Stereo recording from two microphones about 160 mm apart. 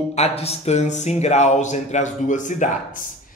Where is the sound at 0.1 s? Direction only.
40° left (ahead or behind).